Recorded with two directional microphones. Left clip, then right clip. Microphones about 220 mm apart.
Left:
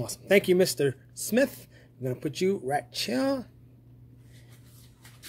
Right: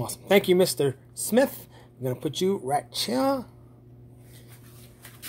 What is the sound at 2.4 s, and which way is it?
Speech, 10° left (ahead or behind).